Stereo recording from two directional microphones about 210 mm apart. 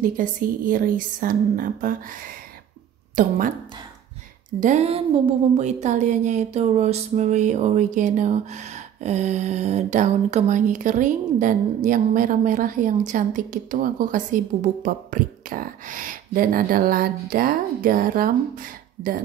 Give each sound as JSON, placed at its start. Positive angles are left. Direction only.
{"t": 0.0, "sound": "speech", "side_deg": -40}
{"t": 3.2, "sound": "speech", "side_deg": -40}
{"t": 4.6, "sound": "speech", "side_deg": -35}